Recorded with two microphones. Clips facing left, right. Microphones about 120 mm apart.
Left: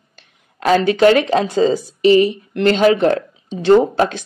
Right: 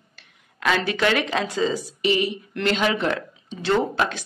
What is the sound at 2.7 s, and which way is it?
Speech, 45° left (ahead or behind).